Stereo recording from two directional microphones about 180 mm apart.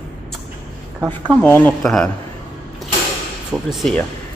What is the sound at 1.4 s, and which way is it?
Speech, 5° left (ahead or behind).